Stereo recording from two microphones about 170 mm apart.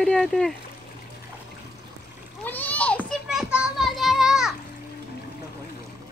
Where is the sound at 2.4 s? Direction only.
10° left (ahead or behind).